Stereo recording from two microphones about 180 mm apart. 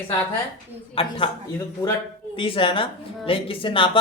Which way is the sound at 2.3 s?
30° left (ahead or behind).